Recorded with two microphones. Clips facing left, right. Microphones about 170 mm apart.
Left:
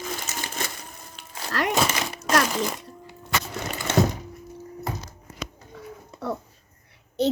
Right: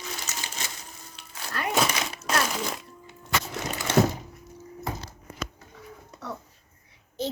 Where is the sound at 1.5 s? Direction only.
80° left.